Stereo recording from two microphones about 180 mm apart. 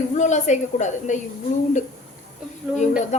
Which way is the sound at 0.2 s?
40° left (ahead or behind).